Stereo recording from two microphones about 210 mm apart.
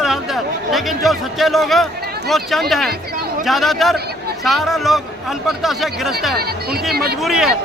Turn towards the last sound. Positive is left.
turn(degrees=0)  # may be behind; listen again after turning